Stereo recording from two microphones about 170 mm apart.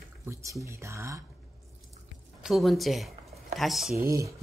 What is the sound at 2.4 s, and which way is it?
Speech, centre (ahead or behind).